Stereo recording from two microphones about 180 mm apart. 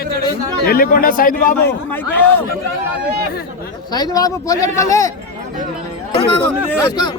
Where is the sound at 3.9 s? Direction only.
20° left (ahead or behind).